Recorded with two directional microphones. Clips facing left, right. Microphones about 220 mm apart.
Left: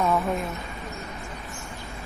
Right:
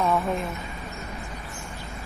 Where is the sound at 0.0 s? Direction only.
Centre (ahead or behind).